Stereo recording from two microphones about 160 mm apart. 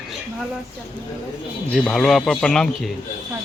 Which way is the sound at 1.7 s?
5° left (ahead or behind).